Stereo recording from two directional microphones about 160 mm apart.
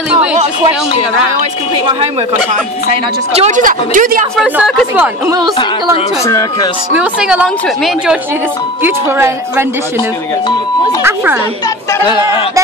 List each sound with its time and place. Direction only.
0.1 s a woman's voice: 10° right (ahead or behind)
3.3 s speech: 50° right (ahead or behind)
4.4 s a woman's voice: 5° right (ahead or behind)
6.2 s speech: 20° left (ahead or behind)
7.0 s a woman's voice: 5° right (ahead or behind)
8.8 s a woman's voice: 15° right (ahead or behind)
11.0 s a woman's voice: 15° right (ahead or behind)